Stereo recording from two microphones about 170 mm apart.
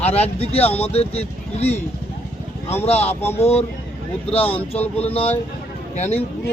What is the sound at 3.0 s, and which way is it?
Speech, 15° left (ahead or behind).